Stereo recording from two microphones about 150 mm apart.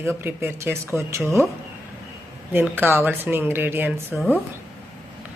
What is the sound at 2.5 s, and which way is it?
Speech, 15° right (ahead or behind).